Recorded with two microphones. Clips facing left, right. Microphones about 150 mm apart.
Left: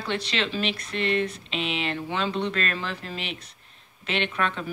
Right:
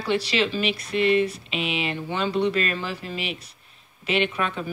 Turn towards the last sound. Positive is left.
turn(degrees=-10)  # may be behind; listen again after turning